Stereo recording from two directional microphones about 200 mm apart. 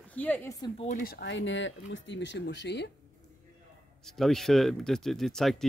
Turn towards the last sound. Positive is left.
turn(degrees=0)  # may be behind; listen again after turning